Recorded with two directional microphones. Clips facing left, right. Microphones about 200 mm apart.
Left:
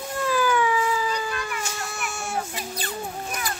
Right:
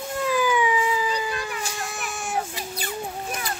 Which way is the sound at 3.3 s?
25° right (ahead or behind).